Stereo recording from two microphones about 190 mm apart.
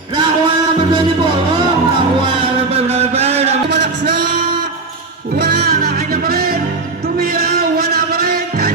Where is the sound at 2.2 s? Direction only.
30° right (ahead or behind).